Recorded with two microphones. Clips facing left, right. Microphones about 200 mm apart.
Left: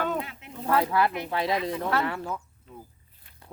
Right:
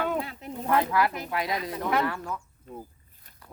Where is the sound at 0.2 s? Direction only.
35° right (ahead or behind).